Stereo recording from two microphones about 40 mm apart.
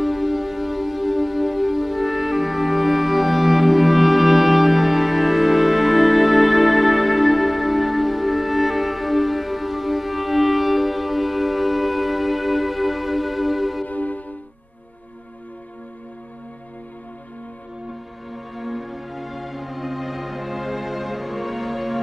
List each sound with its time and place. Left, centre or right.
0.0 s music: centre
13.8 s music: left
18.3 s music: centre